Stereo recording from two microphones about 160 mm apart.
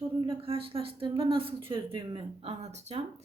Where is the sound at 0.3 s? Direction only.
35° right (ahead or behind).